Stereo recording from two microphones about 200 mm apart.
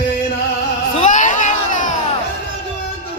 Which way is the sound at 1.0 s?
40° left (ahead or behind).